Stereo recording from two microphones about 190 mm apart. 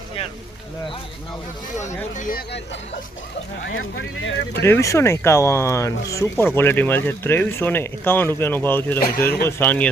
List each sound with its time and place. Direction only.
2.1 s speech: 45° left (ahead or behind)
3.7 s speech: 90° left
4.6 s speech: 15° left (ahead or behind)
9.0 s speech: 50° left (ahead or behind)
9.5 s speech: 10° left (ahead or behind)